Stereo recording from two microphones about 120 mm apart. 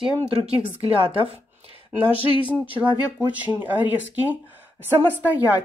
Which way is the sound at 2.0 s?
50° left (ahead or behind).